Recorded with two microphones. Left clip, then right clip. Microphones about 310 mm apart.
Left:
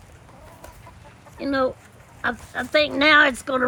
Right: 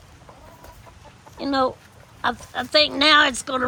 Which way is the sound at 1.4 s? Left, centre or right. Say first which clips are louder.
Right 1 dB; centre.